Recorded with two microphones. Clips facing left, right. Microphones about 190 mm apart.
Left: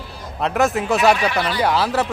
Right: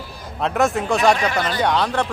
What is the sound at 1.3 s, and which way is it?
Speech, 45° right (ahead or behind).